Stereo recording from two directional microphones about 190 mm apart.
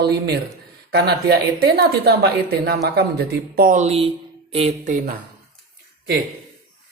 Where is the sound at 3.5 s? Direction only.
45° right (ahead or behind).